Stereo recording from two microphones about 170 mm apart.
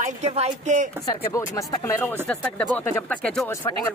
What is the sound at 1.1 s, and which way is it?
Speech, 20° left (ahead or behind).